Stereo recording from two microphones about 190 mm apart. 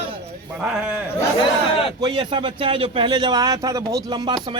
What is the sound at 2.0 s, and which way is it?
A man's voice, 25° right (ahead or behind).